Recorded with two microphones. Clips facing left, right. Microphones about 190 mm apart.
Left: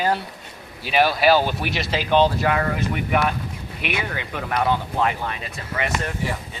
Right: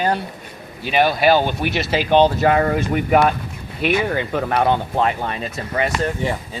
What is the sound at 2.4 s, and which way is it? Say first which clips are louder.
Speech: right 5 dB; 40° right (ahead or behind).